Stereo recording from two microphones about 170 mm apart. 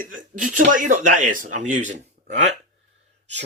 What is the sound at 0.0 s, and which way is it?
Speech, 55° right (ahead or behind).